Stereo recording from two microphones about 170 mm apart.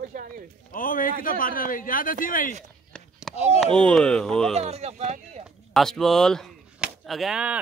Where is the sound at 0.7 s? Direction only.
55° left (ahead or behind).